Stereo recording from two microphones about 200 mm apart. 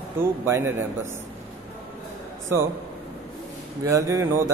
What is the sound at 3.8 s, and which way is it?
Speech, 15° right (ahead or behind).